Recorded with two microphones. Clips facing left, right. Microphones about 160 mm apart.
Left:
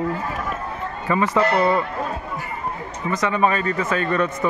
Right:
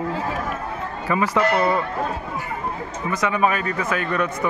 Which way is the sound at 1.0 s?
Centre (ahead or behind).